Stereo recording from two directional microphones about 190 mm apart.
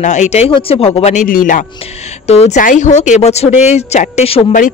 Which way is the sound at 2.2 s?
35° left (ahead or behind).